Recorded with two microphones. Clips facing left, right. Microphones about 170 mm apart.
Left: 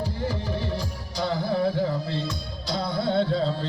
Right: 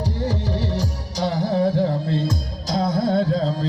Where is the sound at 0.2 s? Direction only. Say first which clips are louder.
Right 4 dB; 40° right (ahead or behind).